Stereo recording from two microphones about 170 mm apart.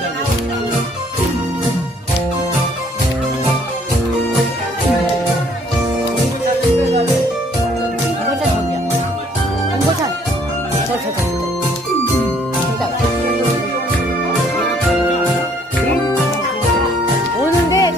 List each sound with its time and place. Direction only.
17.6 s music: 20° left (ahead or behind)